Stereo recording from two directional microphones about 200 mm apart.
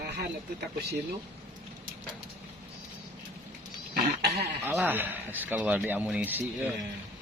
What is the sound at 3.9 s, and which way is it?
Goat, 55° right (ahead or behind).